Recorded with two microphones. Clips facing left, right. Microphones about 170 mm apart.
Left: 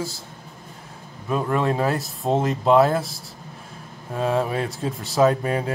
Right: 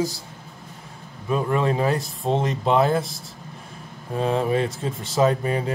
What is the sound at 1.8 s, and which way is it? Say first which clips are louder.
Speech: even; centre (ahead or behind).